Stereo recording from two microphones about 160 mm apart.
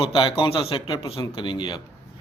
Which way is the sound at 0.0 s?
35° left (ahead or behind).